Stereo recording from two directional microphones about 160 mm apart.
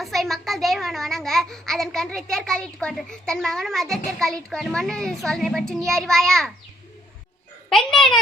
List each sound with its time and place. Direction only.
0.0 s a child's voice: centre (ahead or behind)
7.7 s a child's voice: 5° left (ahead or behind)